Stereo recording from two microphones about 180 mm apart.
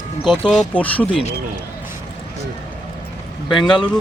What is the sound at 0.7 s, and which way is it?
Speech, 10° left (ahead or behind).